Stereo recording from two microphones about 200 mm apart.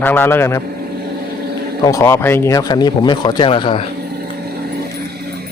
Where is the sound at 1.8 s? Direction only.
15° left (ahead or behind).